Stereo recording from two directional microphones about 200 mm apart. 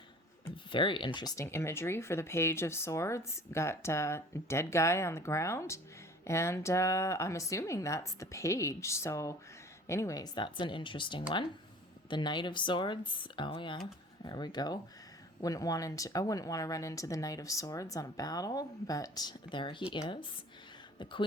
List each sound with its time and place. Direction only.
0.5 s speech: 25° left (ahead or behind)